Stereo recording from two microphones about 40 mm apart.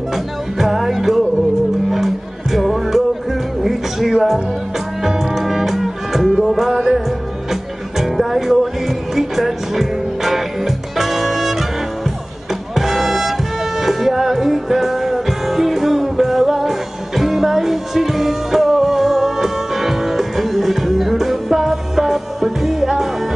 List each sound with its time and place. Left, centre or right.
0.1 s music: centre